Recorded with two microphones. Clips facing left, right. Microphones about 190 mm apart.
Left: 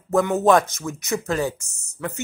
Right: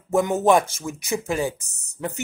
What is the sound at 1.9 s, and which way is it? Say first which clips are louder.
Speech: even; 15° right (ahead or behind).